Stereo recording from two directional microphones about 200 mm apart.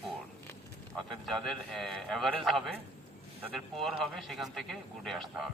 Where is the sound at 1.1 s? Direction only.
Centre (ahead or behind).